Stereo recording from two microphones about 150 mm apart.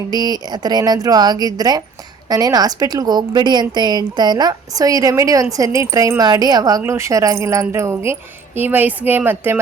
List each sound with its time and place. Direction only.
0.1 s speech: 25° right (ahead or behind)